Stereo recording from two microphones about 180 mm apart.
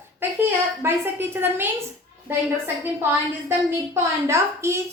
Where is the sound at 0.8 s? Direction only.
10° right (ahead or behind).